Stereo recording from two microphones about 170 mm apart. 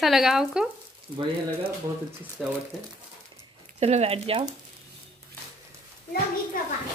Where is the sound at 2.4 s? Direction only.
Centre (ahead or behind).